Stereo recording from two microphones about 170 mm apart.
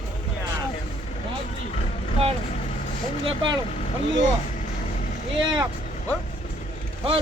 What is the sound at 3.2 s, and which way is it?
Speech, 30° right (ahead or behind).